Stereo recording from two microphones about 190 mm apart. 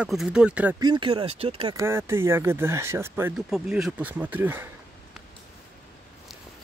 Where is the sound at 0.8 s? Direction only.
25° right (ahead or behind).